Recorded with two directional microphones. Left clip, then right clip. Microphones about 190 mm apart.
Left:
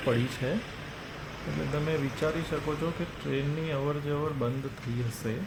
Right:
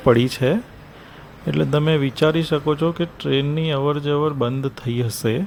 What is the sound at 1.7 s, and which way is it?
Speech, 40° right (ahead or behind).